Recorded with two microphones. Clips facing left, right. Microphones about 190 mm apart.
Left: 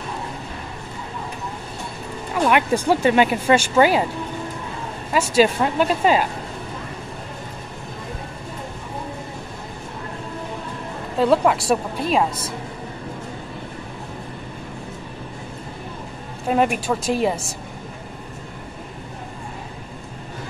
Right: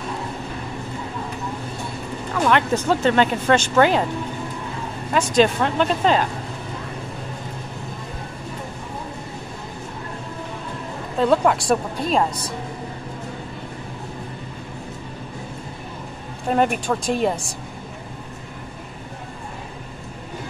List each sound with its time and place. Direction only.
2.3 s speech: 15° left (ahead or behind)
5.1 s speech: 5° left (ahead or behind)
11.1 s a woman's voice: 5° left (ahead or behind)
16.4 s a woman's voice: 5° left (ahead or behind)